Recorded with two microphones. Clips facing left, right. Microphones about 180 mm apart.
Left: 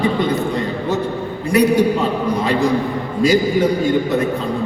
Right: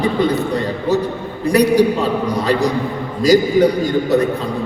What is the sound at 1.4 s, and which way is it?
Speech, 35° right (ahead or behind).